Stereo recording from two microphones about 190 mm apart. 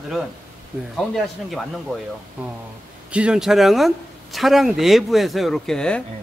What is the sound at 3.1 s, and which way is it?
Speech, 5° right (ahead or behind).